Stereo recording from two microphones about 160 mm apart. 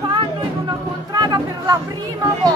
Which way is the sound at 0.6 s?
25° right (ahead or behind).